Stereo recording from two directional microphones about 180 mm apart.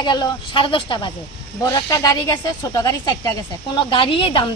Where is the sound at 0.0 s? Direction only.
25° left (ahead or behind).